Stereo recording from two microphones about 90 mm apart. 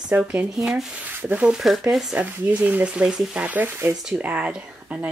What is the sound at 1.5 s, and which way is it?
Speech, 5° right (ahead or behind).